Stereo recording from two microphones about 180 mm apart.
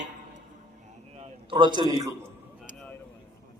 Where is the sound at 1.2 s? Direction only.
25° right (ahead or behind).